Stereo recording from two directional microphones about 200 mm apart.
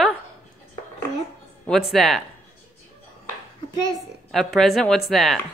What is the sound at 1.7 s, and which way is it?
Speech, centre (ahead or behind).